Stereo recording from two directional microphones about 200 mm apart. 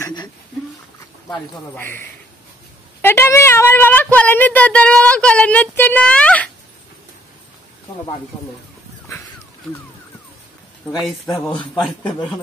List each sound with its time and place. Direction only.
0.0 s a sound: 20° left (ahead or behind)
1.8 s speech: 10° left (ahead or behind)
11.0 s speech: centre (ahead or behind)